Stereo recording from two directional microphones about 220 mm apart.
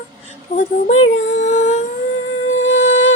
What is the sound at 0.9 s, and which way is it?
Music, 65° left (ahead or behind).